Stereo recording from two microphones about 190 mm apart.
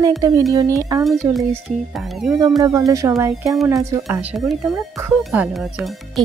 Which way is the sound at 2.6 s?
20° right (ahead or behind).